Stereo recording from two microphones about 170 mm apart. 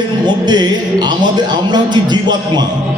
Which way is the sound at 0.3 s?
25° right (ahead or behind).